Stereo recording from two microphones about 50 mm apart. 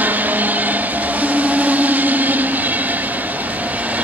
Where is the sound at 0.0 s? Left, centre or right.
Right.